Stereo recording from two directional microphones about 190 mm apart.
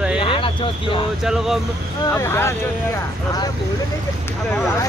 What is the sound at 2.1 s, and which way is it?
Speech, 15° left (ahead or behind).